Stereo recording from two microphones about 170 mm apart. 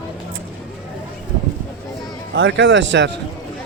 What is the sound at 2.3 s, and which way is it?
Speech, 90° right.